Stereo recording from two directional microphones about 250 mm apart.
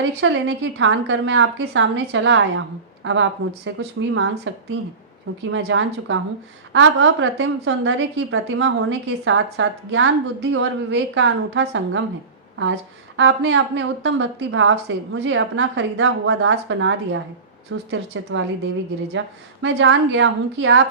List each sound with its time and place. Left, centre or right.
0.0 s a woman's voice: right
13.1 s a woman's voice: right
19.6 s a woman's voice: right